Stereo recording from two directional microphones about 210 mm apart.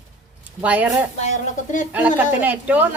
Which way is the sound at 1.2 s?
35° left (ahead or behind).